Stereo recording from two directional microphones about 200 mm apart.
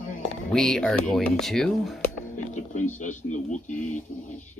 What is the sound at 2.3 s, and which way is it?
A man's voice, 35° left (ahead or behind).